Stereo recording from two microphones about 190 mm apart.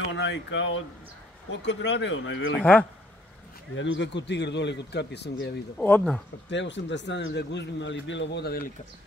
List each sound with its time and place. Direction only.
0.1 s speech: 70° left (ahead or behind)
2.6 s speech: 5° left (ahead or behind)
3.7 s speech: 75° left (ahead or behind)
5.8 s speech: 5° left (ahead or behind)
6.5 s speech: 70° left (ahead or behind); by 8.7 s 55° left (ahead or behind)